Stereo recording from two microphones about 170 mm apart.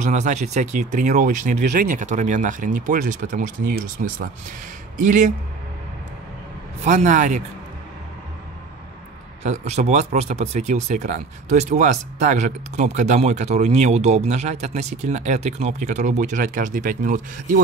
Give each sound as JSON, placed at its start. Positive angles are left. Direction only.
{"t": 0.0, "sound": "speech", "side_deg": -45}
{"t": 6.8, "sound": "speech", "side_deg": -45}
{"t": 9.4, "sound": "speech", "side_deg": -40}